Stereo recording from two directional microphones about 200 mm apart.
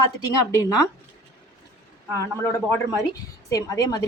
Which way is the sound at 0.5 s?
15° left (ahead or behind).